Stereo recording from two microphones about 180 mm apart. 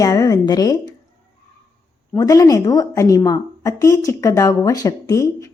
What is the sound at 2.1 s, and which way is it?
A woman's voice, 20° left (ahead or behind).